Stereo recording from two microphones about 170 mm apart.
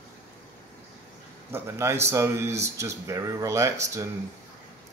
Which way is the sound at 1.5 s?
15° right (ahead or behind).